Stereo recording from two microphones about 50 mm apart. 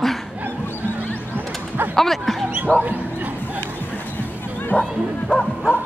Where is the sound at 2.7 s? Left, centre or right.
Right.